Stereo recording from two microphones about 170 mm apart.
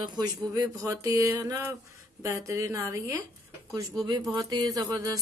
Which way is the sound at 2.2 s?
20° right (ahead or behind).